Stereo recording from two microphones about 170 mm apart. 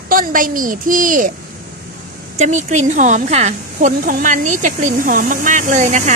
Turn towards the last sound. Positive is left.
turn(degrees=-45)  # may be behind; listen again after turning